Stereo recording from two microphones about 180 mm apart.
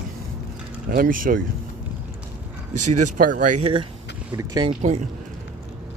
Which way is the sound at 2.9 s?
45° right (ahead or behind).